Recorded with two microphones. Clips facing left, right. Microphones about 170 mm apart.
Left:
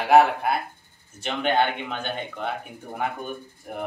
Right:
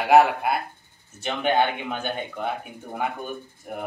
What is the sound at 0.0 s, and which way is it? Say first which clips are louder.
Speech: even; 5° right (ahead or behind).